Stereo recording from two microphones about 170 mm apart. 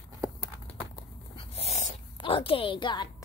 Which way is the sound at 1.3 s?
35° left (ahead or behind).